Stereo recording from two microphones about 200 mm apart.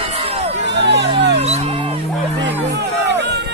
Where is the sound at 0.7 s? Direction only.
60° right (ahead or behind).